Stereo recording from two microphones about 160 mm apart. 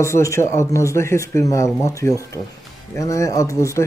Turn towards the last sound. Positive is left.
turn(degrees=20)  # may be behind; listen again after turning